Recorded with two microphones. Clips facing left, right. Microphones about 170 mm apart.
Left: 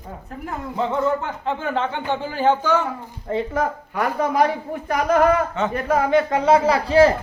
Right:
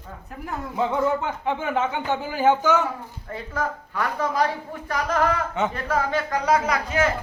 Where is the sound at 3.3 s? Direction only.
20° left (ahead or behind).